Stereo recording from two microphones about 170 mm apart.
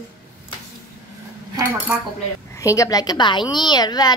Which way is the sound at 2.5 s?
20° left (ahead or behind).